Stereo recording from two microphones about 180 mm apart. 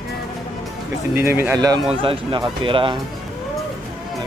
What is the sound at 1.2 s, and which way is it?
Speech, 10° right (ahead or behind).